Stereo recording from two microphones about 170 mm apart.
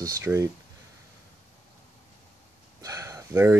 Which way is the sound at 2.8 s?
20° right (ahead or behind).